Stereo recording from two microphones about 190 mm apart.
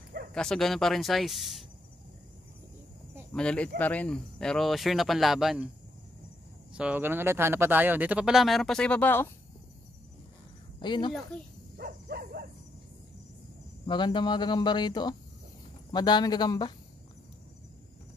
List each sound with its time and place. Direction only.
0.3 s speech: 5° left (ahead or behind)
3.3 s speech: 5° left (ahead or behind)
6.7 s speech: 5° right (ahead or behind); by 9.3 s 10° left (ahead or behind)
10.8 s speech: 25° left (ahead or behind)
11.8 s a sound: 55° right (ahead or behind)
13.8 s speech: 25° left (ahead or behind)